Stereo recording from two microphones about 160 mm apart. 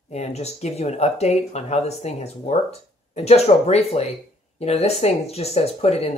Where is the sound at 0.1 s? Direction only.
40° left (ahead or behind).